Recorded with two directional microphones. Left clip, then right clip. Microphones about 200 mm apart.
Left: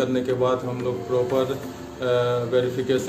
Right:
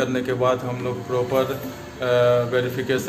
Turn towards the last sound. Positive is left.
turn(degrees=5)  # may be behind; listen again after turning